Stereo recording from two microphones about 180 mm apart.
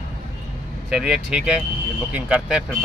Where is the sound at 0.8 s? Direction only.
5° right (ahead or behind).